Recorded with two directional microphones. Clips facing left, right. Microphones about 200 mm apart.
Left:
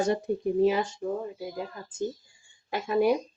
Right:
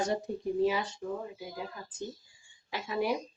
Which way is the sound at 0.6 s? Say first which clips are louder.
Left 5 dB; 50° left (ahead or behind).